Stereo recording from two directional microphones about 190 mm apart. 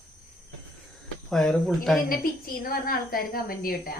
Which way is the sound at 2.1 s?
50° left (ahead or behind).